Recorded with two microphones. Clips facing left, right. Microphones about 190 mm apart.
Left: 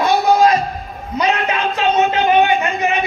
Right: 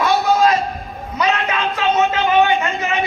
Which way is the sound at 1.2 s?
25° left (ahead or behind).